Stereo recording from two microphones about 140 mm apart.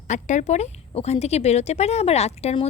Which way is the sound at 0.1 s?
60° left (ahead or behind).